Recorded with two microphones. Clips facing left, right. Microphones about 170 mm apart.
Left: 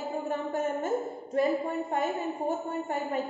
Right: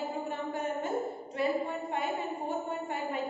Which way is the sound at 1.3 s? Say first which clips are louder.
Left 4 dB; 45° left (ahead or behind).